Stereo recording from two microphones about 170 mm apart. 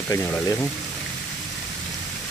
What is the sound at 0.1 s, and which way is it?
Speech, 15° left (ahead or behind).